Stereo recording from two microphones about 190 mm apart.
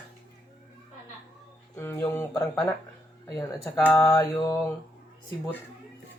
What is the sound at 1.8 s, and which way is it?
Speech, 15° left (ahead or behind).